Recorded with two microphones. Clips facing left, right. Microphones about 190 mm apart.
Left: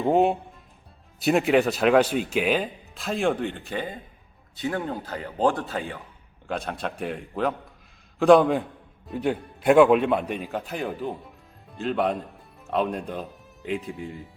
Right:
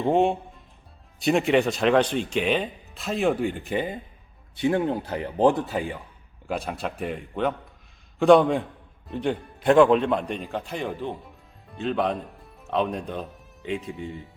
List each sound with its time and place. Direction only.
0.0 s speech: 5° left (ahead or behind)